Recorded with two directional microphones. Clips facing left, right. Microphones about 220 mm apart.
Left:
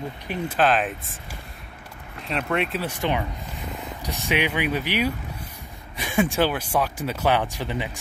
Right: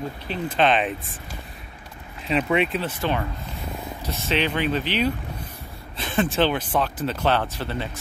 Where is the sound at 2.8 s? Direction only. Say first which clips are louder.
Even; 15° left (ahead or behind).